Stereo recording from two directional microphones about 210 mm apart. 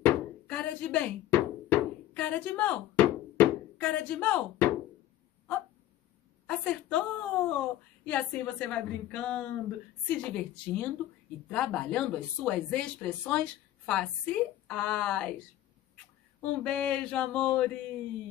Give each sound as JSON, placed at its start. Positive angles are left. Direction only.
{"t": 0.0, "sound": "a sound", "side_deg": 5}
{"t": 6.4, "sound": "speech", "side_deg": 5}
{"t": 16.3, "sound": "speech", "side_deg": 5}